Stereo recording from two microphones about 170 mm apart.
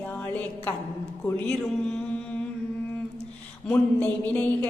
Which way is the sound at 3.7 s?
10° left (ahead or behind).